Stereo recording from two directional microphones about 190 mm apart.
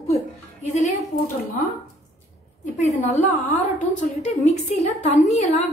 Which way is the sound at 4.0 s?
35° left (ahead or behind).